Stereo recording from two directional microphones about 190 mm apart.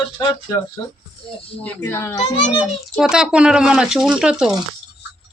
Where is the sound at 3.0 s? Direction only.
5° right (ahead or behind).